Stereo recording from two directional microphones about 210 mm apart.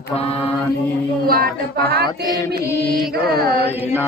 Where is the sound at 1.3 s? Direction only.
45° right (ahead or behind).